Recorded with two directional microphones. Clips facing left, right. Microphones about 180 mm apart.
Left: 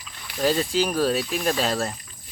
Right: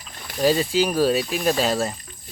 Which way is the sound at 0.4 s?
5° right (ahead or behind).